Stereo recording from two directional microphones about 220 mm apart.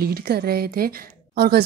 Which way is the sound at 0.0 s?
45° right (ahead or behind).